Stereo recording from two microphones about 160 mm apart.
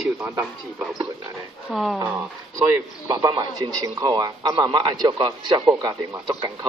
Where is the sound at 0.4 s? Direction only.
Centre (ahead or behind).